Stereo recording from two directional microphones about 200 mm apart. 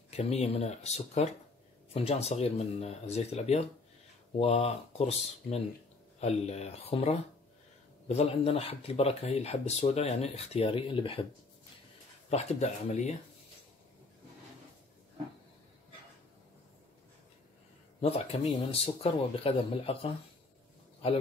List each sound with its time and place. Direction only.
0.1 s speech: 30° left (ahead or behind)
12.3 s speech: 35° left (ahead or behind)
18.0 s speech: 30° left (ahead or behind)